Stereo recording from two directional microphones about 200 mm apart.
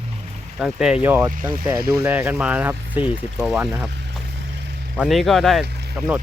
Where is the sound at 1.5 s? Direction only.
20° right (ahead or behind).